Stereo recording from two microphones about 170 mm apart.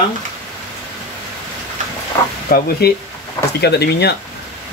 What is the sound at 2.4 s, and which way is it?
Speech, 60° left (ahead or behind).